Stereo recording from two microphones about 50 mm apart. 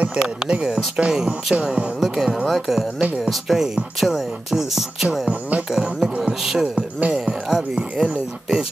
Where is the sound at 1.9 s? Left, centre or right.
Centre.